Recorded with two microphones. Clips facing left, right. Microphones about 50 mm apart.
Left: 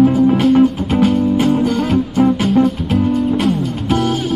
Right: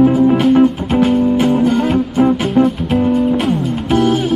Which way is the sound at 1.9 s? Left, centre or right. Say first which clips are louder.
Right 1 dB; centre.